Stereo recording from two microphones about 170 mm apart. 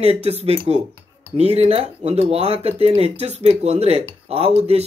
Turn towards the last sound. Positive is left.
turn(degrees=-40)  # may be behind; listen again after turning